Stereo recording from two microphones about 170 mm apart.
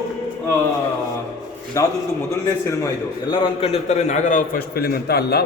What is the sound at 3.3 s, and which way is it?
A man's voice, 35° left (ahead or behind).